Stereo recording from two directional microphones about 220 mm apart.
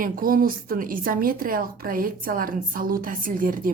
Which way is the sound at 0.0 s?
40° right (ahead or behind).